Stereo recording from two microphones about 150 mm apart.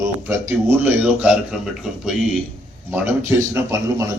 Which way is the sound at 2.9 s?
20° right (ahead or behind).